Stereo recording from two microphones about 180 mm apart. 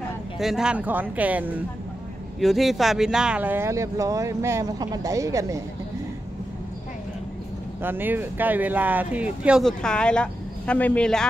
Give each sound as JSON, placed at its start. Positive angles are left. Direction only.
{"t": 0.4, "sound": "speech", "side_deg": -5}
{"t": 7.8, "sound": "speech", "side_deg": -10}